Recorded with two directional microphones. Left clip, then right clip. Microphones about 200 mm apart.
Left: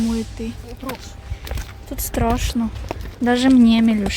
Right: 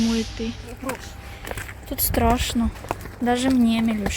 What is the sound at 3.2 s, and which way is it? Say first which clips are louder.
Speech: left 5 dB; 30° left (ahead or behind).